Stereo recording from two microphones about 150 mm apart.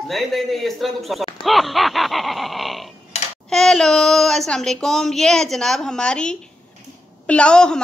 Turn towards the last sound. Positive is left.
turn(degrees=5)  # may be behind; listen again after turning